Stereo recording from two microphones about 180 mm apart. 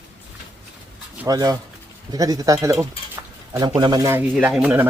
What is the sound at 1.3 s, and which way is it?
Speech, 20° right (ahead or behind).